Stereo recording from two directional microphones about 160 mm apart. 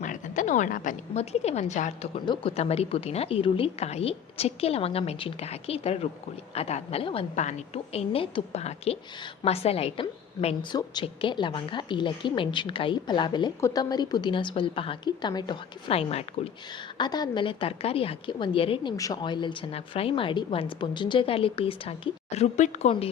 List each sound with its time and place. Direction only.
0.0 s a woman's voice: 50° left (ahead or behind)
2.2 s a woman's voice: 30° left (ahead or behind)
2.6 s a woman's voice: 40° left (ahead or behind)
15.9 s a woman's voice: 40° left (ahead or behind)
17.0 s a woman's voice: 25° left (ahead or behind)